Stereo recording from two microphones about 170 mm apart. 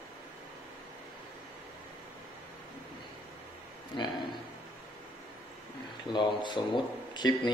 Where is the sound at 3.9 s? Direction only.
25° left (ahead or behind).